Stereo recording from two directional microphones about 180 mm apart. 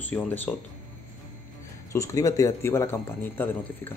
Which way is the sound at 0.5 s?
5° left (ahead or behind).